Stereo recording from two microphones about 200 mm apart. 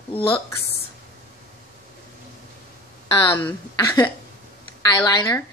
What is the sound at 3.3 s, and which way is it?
Speech, 10° left (ahead or behind).